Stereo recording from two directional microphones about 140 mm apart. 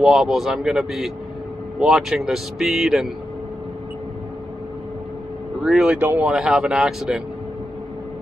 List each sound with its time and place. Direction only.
0.0 s speech: 5° right (ahead or behind)
5.6 s speech: 5° right (ahead or behind)